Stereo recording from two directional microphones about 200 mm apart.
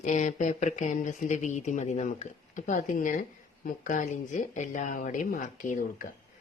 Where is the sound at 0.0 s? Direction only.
40° left (ahead or behind).